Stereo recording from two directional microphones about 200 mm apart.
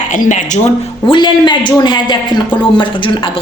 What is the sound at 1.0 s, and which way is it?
A man's voice, 25° left (ahead or behind).